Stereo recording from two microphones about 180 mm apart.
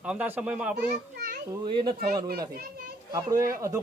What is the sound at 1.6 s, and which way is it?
Speech, 25° right (ahead or behind).